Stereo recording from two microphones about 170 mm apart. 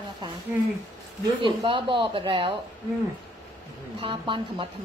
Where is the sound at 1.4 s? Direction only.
30° right (ahead or behind).